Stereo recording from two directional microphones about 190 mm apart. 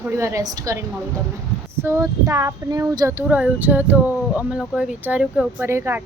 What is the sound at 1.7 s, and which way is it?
Speech, 15° right (ahead or behind).